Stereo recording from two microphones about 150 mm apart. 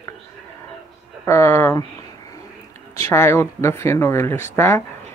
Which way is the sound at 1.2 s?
20° left (ahead or behind).